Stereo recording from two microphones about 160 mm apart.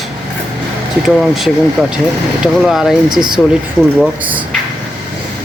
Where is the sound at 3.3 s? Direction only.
Centre (ahead or behind).